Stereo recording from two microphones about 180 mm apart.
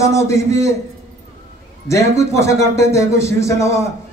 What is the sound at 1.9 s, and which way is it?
Speech, 15° left (ahead or behind).